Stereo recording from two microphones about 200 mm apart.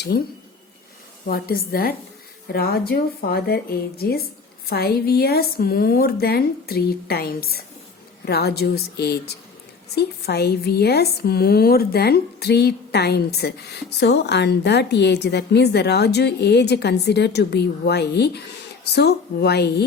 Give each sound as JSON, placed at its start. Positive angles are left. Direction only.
{"t": 0.1, "sound": "a woman's voice", "side_deg": 50}
{"t": 1.3, "sound": "a woman's voice", "side_deg": 50}